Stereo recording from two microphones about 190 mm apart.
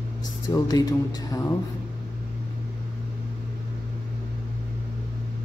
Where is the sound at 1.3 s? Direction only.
15° left (ahead or behind).